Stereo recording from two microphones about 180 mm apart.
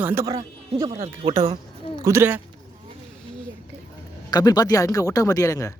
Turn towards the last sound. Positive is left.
turn(degrees=20)  # may be behind; listen again after turning